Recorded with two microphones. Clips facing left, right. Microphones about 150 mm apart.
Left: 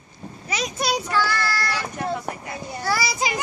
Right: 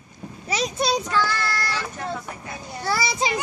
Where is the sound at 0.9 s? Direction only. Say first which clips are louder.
Even; 10° left (ahead or behind).